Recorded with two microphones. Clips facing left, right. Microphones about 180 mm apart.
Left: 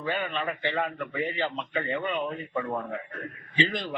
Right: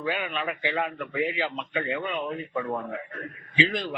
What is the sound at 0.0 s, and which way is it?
A man's voice, 5° right (ahead or behind).